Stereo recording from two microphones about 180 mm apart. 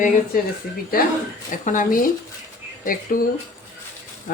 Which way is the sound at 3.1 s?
50° left (ahead or behind).